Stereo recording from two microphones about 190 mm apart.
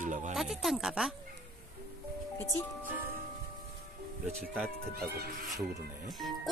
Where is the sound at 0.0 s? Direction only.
40° right (ahead or behind).